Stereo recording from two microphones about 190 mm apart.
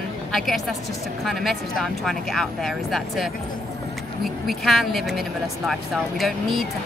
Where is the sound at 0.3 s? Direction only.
Centre (ahead or behind).